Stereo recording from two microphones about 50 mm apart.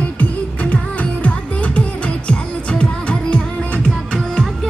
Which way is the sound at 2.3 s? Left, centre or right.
Left.